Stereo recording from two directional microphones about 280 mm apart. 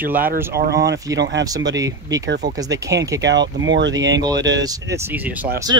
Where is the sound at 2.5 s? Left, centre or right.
Centre.